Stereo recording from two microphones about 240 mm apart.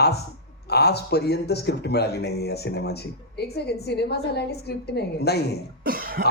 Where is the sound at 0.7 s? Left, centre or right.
Left.